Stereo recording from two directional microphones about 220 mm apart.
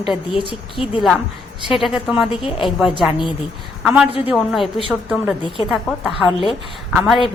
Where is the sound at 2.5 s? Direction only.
25° left (ahead or behind).